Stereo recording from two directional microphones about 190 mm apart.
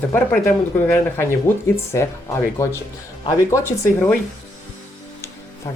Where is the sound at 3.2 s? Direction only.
15° left (ahead or behind).